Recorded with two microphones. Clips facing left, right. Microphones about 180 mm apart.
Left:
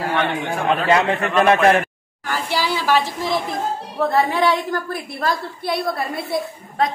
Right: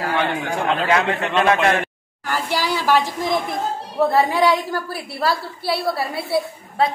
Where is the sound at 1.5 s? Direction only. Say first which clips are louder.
Left 4 dB; 30° left (ahead or behind).